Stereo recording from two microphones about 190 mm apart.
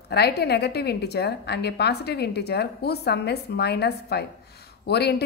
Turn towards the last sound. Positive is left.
turn(degrees=60)  # may be behind; listen again after turning